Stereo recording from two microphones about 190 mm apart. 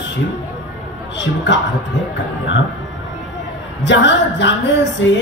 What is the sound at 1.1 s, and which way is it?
Speech, 70° left (ahead or behind).